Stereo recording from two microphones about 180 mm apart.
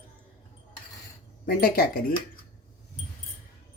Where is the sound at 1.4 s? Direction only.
55° left (ahead or behind).